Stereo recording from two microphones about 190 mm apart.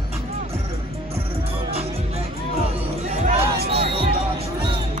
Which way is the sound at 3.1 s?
35° right (ahead or behind).